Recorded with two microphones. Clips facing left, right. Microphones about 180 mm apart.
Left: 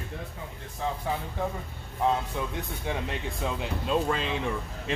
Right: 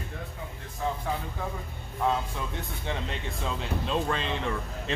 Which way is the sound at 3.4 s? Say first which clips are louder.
Even; 10° left (ahead or behind).